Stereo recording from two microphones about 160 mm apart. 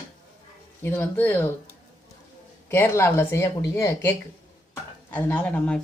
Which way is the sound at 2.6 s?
15° left (ahead or behind).